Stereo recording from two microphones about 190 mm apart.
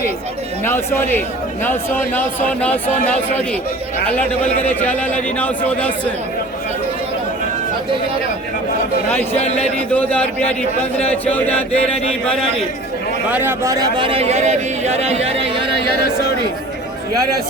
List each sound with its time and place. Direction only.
0.6 s speech: 10° left (ahead or behind)
4.7 s speech: 10° left (ahead or behind)
9.3 s a man's voice: 35° left (ahead or behind)
9.9 s a man's voice: 10° left (ahead or behind)
13.3 s speech: 10° right (ahead or behind); by 15.6 s 35° right (ahead or behind)